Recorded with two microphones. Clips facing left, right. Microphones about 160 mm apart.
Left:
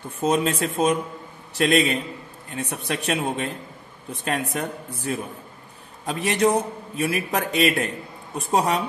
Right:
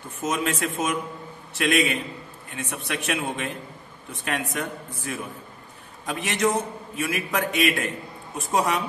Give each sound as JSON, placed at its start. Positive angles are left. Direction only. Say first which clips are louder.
{"t": 0.2, "sound": "a man's voice", "louder": "left 4 dB", "side_deg": 35}